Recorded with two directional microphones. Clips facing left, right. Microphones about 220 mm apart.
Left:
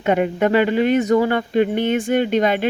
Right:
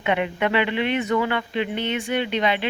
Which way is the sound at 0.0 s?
40° left (ahead or behind).